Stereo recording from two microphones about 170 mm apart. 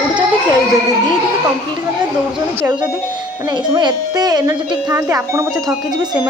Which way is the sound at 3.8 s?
25° right (ahead or behind).